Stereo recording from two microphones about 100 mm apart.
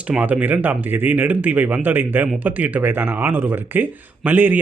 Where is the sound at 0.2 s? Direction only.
15° right (ahead or behind).